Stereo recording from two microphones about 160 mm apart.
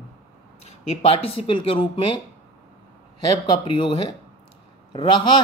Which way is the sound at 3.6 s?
30° left (ahead or behind).